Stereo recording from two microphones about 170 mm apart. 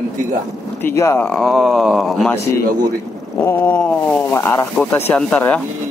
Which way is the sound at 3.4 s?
10° left (ahead or behind).